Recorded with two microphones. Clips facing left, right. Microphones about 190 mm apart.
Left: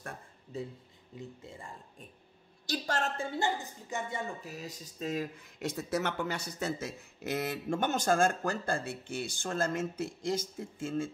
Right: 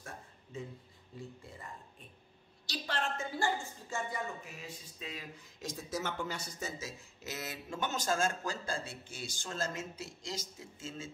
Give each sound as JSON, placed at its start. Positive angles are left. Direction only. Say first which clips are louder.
{"t": 0.5, "sound": "speech", "louder": "left 5 dB", "side_deg": 35}
{"t": 1.4, "sound": "a man's voice", "louder": "left 3 dB", "side_deg": 25}
{"t": 2.6, "sound": "a woman's voice", "louder": "left 5 dB", "side_deg": 45}
{"t": 3.2, "sound": "speech", "louder": "left 2 dB", "side_deg": 25}
{"t": 5.6, "sound": "speech", "louder": "left 6 dB", "side_deg": 65}